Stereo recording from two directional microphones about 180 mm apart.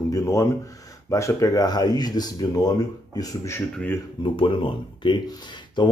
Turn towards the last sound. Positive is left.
turn(degrees=25)  # may be behind; listen again after turning